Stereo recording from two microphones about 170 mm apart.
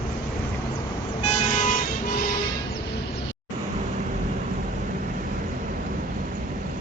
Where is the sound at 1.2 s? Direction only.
45° left (ahead or behind).